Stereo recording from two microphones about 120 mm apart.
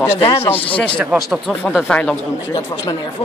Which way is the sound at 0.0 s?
20° left (ahead or behind).